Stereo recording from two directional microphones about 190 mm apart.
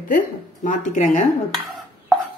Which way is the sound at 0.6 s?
40° left (ahead or behind).